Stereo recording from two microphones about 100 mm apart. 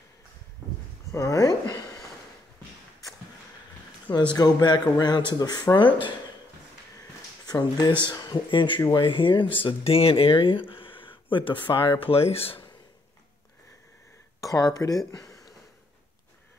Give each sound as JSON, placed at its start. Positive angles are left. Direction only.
{"t": 1.1, "sound": "speech", "side_deg": 35}
{"t": 4.4, "sound": "speech", "side_deg": 40}
{"t": 7.4, "sound": "speech", "side_deg": 40}
{"t": 9.6, "sound": "speech", "side_deg": 70}
{"t": 14.4, "sound": "speech", "side_deg": 35}
{"t": 15.0, "sound": "a sound", "side_deg": 35}